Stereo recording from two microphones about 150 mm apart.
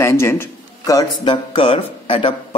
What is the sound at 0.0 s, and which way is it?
Speech, 15° left (ahead or behind).